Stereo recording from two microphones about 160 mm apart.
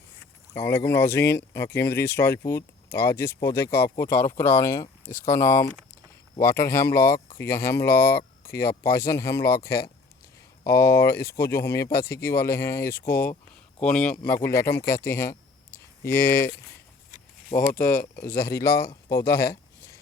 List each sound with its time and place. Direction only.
0.5 s speech: 15° left (ahead or behind)
7.9 s speech: 70° left (ahead or behind)
8.4 s speech: 15° left (ahead or behind)
13.1 s speech: 65° left (ahead or behind)
13.8 s speech: 5° left (ahead or behind)
17.5 s speech: 30° left (ahead or behind)
17.8 s speech: 65° left (ahead or behind)
18.3 s speech: 20° left (ahead or behind)
19.4 s a sound: 20° left (ahead or behind)